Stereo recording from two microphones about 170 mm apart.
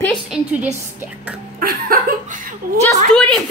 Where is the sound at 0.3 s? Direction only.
5° right (ahead or behind).